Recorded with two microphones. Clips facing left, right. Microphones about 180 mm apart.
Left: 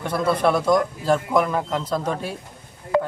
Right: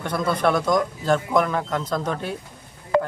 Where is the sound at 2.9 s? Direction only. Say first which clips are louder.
Even; centre (ahead or behind).